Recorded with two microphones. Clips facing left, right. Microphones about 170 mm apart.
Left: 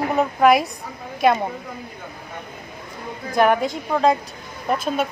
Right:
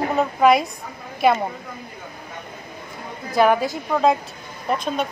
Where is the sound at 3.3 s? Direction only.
5° right (ahead or behind).